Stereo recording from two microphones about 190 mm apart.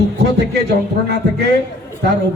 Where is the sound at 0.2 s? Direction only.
65° right (ahead or behind).